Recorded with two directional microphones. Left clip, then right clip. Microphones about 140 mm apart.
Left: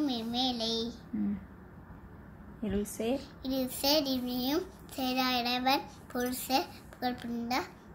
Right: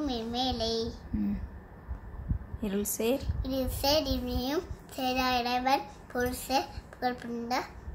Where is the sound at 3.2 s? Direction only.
10° right (ahead or behind).